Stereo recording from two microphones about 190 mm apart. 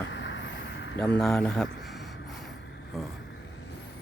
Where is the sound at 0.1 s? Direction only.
75° left (ahead or behind).